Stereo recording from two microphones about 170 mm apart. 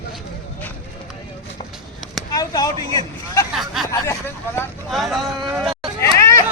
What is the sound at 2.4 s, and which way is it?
Speech, 20° left (ahead or behind).